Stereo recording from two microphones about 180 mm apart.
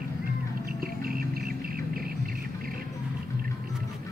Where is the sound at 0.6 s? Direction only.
55° right (ahead or behind).